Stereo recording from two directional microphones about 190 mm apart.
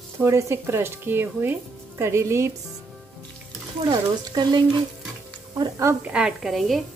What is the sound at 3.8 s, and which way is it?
Speech, 20° right (ahead or behind).